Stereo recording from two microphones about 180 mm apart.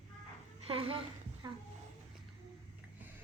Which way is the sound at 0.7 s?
30° right (ahead or behind).